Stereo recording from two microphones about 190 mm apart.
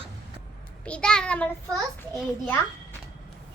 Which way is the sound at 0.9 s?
5° left (ahead or behind).